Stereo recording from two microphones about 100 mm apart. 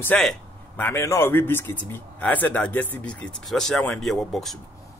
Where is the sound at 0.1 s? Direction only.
15° left (ahead or behind).